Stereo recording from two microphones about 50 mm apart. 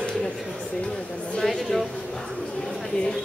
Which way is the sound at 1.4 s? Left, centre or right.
Centre.